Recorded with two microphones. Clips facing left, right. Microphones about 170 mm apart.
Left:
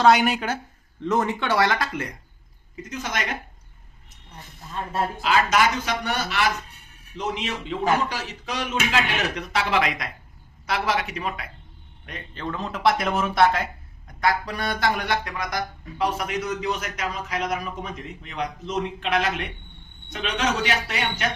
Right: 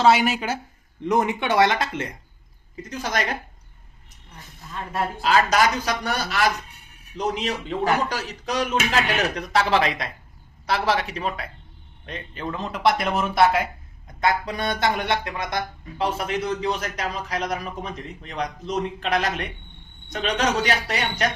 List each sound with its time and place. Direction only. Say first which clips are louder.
0.0 s speech: even; centre (ahead or behind)
1.0 s speech: right 1 dB; 15° right (ahead or behind)
2.8 s speech: right 3 dB; 35° right (ahead or behind)
5.2 s speech: right 2 dB; 40° right (ahead or behind)
12.3 s a man's voice: even; 10° right (ahead or behind)
12.5 s speech: even; centre (ahead or behind)
14.2 s speech: right 1 dB; 20° right (ahead or behind); by 21.3 s 40° right (ahead or behind)